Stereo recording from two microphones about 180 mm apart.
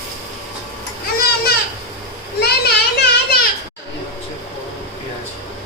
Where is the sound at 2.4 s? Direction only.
60° left (ahead or behind).